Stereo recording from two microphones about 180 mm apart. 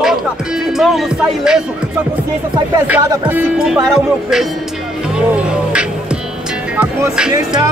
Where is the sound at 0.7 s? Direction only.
Centre (ahead or behind).